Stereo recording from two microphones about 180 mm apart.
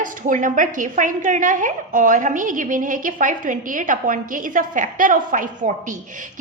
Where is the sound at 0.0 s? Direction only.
45° right (ahead or behind).